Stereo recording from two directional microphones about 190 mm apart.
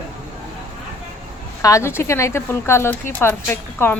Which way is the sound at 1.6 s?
15° left (ahead or behind).